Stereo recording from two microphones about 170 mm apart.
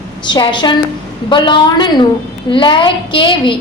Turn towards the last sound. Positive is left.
turn(degrees=30)  # may be behind; listen again after turning